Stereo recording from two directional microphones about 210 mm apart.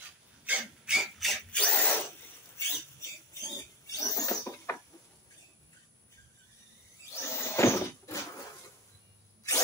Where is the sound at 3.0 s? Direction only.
15° left (ahead or behind).